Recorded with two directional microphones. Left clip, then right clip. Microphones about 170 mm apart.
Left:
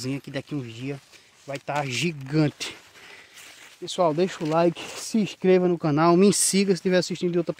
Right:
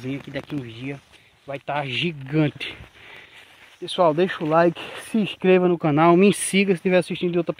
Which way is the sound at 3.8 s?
5° left (ahead or behind).